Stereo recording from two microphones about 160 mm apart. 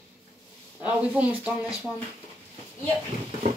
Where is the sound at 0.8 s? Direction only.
10° right (ahead or behind).